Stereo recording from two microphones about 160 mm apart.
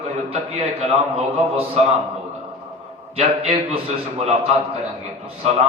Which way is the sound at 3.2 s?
40° right (ahead or behind).